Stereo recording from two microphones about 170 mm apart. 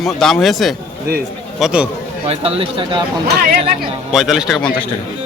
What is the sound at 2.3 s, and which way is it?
Speech, 35° right (ahead or behind).